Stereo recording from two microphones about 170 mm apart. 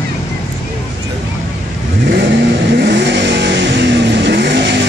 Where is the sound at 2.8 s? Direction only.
90° right.